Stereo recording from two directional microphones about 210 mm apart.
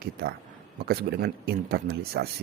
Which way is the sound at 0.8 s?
50° right (ahead or behind).